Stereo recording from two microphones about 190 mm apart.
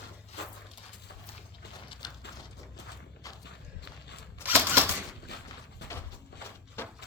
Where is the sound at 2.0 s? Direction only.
20° left (ahead or behind).